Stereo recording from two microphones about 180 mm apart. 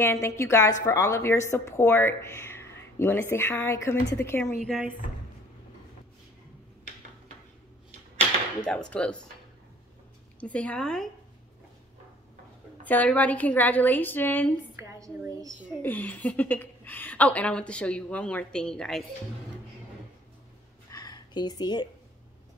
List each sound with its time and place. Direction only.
0.0 s a woman's voice: 15° left (ahead or behind)
4.6 s speech: 5° right (ahead or behind)
8.6 s speech: 5° left (ahead or behind)
10.4 s a woman's voice: 5° left (ahead or behind)
12.8 s a woman's voice: 10° left (ahead or behind)
14.8 s a woman's voice: 15° right (ahead or behind)
15.8 s a woman's voice: 10° left (ahead or behind)
20.9 s a sound: 20° left (ahead or behind)